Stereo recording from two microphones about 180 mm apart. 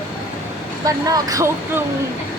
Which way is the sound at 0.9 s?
20° right (ahead or behind).